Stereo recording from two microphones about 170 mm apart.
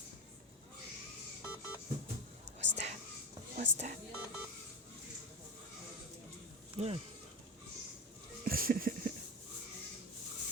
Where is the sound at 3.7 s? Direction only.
45° right (ahead or behind).